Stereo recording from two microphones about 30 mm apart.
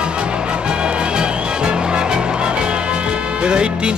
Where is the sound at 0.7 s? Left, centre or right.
Right.